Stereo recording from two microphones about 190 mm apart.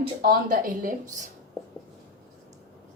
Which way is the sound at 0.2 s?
50° right (ahead or behind).